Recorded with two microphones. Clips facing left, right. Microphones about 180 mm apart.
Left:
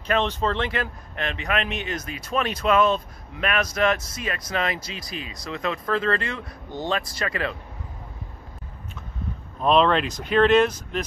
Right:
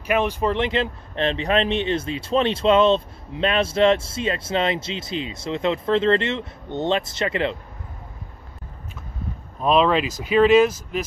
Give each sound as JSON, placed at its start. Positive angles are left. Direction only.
{"t": 0.0, "sound": "speech", "side_deg": -10}
{"t": 9.6, "sound": "speech", "side_deg": -5}